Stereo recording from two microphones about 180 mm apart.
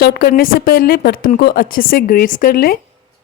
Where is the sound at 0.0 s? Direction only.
60° left (ahead or behind).